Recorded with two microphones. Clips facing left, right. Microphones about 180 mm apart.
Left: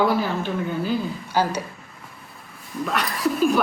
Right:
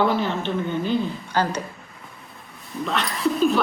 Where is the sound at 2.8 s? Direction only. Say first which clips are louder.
Even; 5° left (ahead or behind).